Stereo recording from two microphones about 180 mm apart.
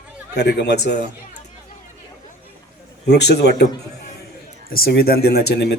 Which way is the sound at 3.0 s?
70° left (ahead or behind).